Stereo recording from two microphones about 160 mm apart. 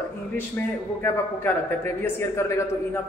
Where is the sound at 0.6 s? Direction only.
10° left (ahead or behind).